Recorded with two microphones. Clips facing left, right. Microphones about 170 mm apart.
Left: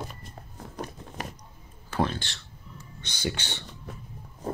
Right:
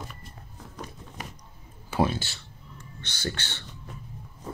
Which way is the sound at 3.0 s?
15° left (ahead or behind).